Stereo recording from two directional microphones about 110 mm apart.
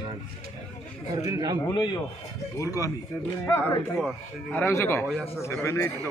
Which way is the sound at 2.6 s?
30° left (ahead or behind).